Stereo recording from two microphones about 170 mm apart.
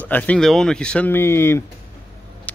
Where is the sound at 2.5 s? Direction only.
10° left (ahead or behind).